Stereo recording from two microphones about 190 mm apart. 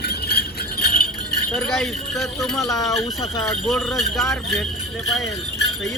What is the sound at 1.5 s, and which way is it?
Speech, centre (ahead or behind).